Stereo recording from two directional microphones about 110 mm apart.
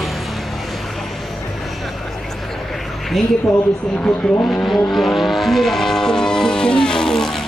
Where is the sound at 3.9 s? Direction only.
15° left (ahead or behind).